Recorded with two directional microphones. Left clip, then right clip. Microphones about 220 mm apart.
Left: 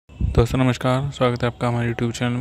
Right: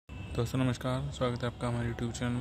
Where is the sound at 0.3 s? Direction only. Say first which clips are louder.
Left 13 dB; 35° left (ahead or behind).